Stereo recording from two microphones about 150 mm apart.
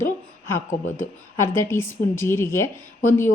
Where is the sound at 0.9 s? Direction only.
15° left (ahead or behind).